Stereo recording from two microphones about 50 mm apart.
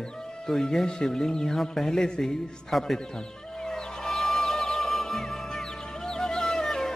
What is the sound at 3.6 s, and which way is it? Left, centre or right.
Music, centre.